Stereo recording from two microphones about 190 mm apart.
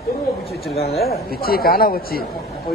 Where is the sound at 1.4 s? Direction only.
50° left (ahead or behind).